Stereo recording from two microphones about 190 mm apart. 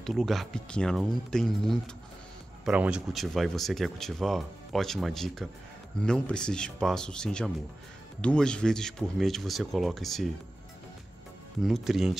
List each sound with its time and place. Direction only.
0.0 s speech: centre (ahead or behind)
11.6 s speech: centre (ahead or behind)